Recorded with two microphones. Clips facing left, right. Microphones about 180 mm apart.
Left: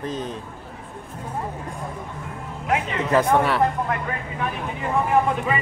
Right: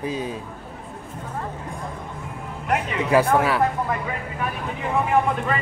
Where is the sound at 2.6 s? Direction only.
Centre (ahead or behind).